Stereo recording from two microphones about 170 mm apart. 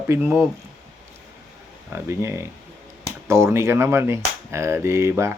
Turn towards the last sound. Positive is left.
turn(degrees=-15)  # may be behind; listen again after turning